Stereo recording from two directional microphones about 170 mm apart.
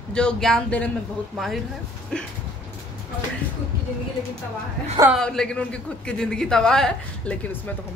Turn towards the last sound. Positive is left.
turn(degrees=5)  # may be behind; listen again after turning